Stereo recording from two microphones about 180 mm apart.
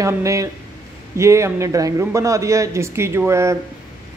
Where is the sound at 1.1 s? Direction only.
15° right (ahead or behind).